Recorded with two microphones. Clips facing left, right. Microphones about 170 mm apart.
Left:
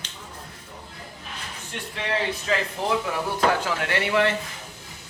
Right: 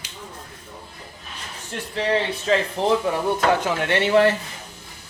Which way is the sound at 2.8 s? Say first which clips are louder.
Right 5 dB; 30° right (ahead or behind).